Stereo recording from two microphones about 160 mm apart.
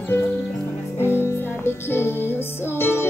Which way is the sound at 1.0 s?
15° left (ahead or behind).